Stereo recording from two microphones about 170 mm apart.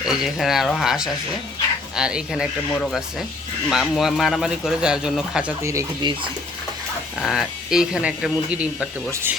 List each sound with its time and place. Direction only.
0.1 s a man's voice: centre (ahead or behind)
5.6 s speech: 20° right (ahead or behind)
7.2 s a man's voice: centre (ahead or behind)